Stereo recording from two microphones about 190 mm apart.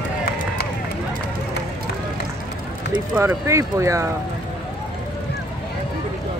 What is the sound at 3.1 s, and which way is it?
Speech, 15° right (ahead or behind).